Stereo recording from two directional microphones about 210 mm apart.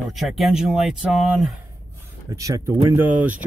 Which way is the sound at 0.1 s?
Centre (ahead or behind).